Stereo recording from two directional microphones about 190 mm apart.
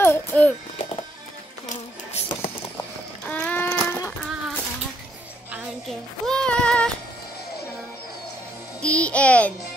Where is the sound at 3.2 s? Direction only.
5° left (ahead or behind).